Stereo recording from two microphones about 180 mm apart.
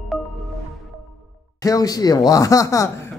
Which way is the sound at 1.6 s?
20° left (ahead or behind).